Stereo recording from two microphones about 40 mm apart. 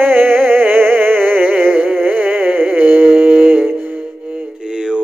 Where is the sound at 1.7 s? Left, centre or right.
Right.